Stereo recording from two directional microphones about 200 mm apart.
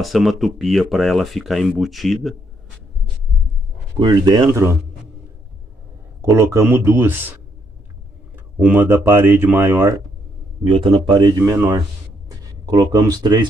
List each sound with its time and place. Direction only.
0.0 s speech: centre (ahead or behind)
4.0 s speech: 25° right (ahead or behind)
6.2 s speech: 15° right (ahead or behind)
8.5 s speech: 10° right (ahead or behind)
10.6 s speech: 25° right (ahead or behind)